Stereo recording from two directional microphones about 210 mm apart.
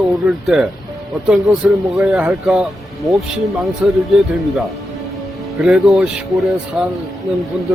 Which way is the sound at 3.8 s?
10° right (ahead or behind).